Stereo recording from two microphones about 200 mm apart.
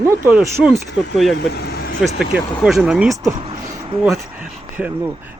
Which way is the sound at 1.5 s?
50° left (ahead or behind).